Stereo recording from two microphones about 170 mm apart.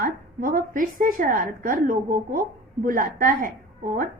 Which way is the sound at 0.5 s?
55° right (ahead or behind).